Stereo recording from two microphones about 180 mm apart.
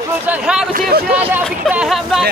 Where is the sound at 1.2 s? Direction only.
10° right (ahead or behind).